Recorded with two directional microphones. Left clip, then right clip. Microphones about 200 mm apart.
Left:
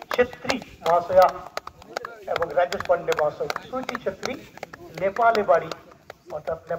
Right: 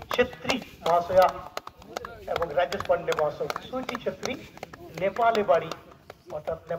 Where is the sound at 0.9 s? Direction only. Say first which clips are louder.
Left 3 dB; 35° left (ahead or behind).